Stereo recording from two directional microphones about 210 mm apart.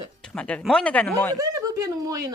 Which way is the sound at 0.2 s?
5° left (ahead or behind).